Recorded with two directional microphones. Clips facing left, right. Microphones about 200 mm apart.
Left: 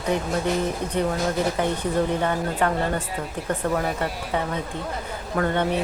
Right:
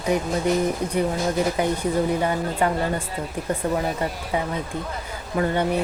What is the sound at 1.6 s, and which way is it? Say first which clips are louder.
Speech: right 1 dB; 10° right (ahead or behind).